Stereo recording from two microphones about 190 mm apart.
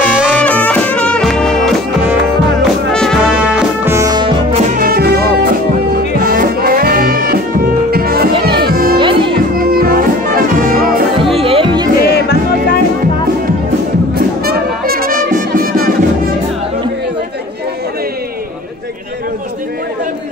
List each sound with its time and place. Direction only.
0.0 s music: 5° right (ahead or behind)
0.4 s music: 10° left (ahead or behind); by 4.6 s 25° right (ahead or behind)
4.7 s music: 50° right (ahead or behind)
8.9 s music: 25° right (ahead or behind)
9.6 s music: 50° right (ahead or behind)
11.3 s music: 30° right (ahead or behind)
12.1 s music: 60° left (ahead or behind)
14.1 s music: 55° right (ahead or behind)